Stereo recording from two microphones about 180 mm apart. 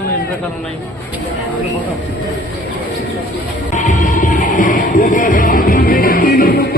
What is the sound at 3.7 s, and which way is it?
Music, 45° left (ahead or behind).